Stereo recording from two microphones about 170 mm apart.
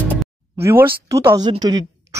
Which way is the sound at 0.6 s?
15° right (ahead or behind).